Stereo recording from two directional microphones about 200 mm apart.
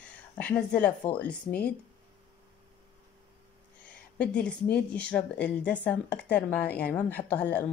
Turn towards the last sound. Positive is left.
turn(degrees=10)  # may be behind; listen again after turning